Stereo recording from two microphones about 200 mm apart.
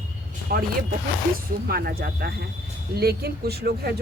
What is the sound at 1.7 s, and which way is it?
Speech, 50° right (ahead or behind).